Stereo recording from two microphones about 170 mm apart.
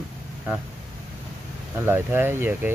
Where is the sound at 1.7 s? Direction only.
10° right (ahead or behind).